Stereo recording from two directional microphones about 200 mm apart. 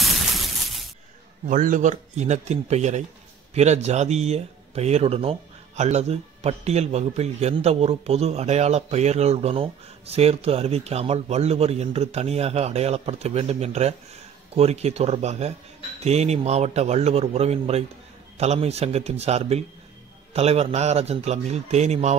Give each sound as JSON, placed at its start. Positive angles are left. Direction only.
{"t": 0.0, "sound": "shatter", "side_deg": 0}
{"t": 1.5, "sound": "speech", "side_deg": -40}